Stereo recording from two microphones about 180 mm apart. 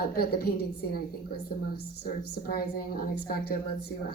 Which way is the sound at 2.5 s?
55° left (ahead or behind).